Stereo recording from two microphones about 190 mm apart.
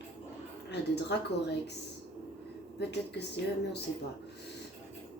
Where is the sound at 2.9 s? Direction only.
65° left (ahead or behind).